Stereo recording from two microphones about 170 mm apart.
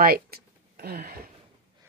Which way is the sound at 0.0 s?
65° right (ahead or behind).